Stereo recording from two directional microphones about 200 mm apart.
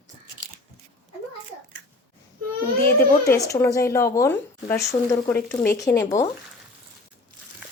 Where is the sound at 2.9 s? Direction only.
15° left (ahead or behind).